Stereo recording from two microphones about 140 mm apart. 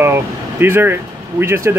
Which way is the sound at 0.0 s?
15° right (ahead or behind).